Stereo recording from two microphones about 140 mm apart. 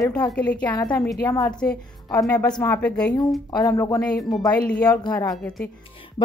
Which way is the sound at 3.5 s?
25° left (ahead or behind).